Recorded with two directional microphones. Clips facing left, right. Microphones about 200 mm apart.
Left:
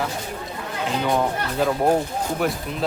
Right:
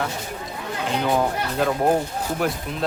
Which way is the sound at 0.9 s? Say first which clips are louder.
Even; centre (ahead or behind).